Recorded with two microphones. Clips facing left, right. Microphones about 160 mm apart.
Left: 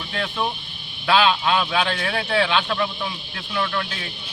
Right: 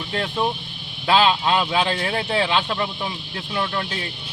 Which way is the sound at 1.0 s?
25° right (ahead or behind).